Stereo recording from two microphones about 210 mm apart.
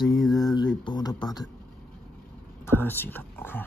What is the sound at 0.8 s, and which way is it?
Speech, 20° left (ahead or behind).